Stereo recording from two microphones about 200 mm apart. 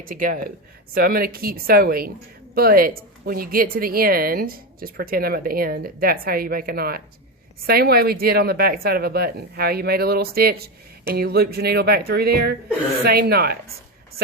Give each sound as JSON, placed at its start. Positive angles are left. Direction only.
{"t": 0.0, "sound": "speech", "side_deg": -45}